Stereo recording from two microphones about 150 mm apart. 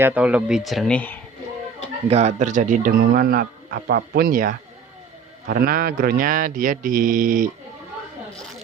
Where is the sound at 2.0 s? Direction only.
45° right (ahead or behind); by 4.5 s 70° right (ahead or behind).